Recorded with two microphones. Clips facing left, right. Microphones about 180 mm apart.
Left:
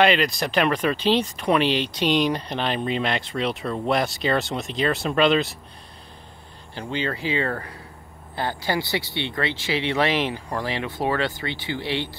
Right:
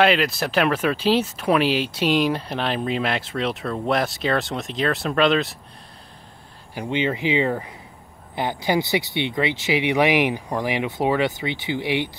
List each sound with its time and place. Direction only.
0.0 s speech: 5° right (ahead or behind)
6.7 s speech: 15° right (ahead or behind)